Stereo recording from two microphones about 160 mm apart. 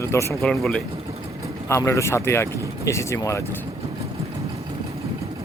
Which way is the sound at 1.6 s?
15° left (ahead or behind).